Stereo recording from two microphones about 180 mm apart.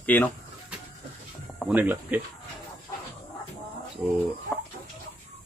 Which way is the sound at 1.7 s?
10° right (ahead or behind).